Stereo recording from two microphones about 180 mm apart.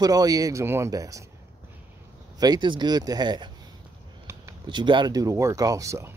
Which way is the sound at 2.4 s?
25° right (ahead or behind).